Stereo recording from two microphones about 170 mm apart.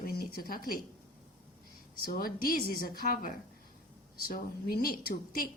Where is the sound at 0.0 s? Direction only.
60° left (ahead or behind).